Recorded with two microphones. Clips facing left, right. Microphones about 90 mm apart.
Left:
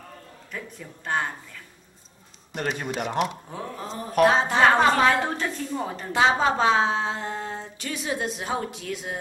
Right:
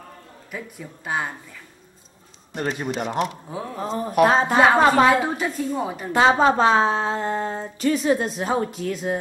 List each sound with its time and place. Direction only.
0.5 s a man's voice: 5° right (ahead or behind)
2.5 s a man's voice: 15° right (ahead or behind)
4.2 s speech: 40° right (ahead or behind)
4.6 s a man's voice: 5° right (ahead or behind)
6.1 s speech: 40° right (ahead or behind)